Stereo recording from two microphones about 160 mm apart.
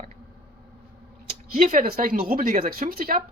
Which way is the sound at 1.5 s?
50° right (ahead or behind).